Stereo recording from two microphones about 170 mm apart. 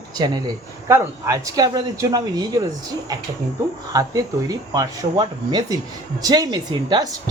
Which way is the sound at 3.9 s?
20° right (ahead or behind).